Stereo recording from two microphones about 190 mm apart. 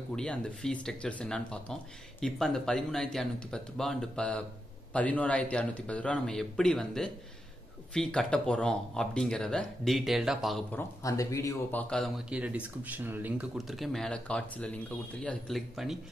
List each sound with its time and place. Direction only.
0.1 s speech: 5° left (ahead or behind)
10.8 s speech: 15° left (ahead or behind)
11.9 s speech: centre (ahead or behind)